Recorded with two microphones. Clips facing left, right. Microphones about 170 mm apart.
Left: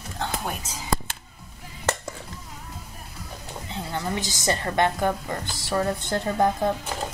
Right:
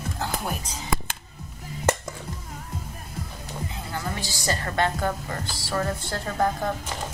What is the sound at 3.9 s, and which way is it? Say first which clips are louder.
A woman's voice: left 3 dB; 20° left (ahead or behind).